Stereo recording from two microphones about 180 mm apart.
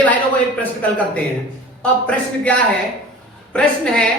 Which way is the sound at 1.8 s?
5° left (ahead or behind).